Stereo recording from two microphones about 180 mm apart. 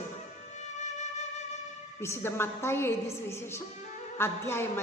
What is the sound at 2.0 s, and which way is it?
A woman's voice, 15° left (ahead or behind).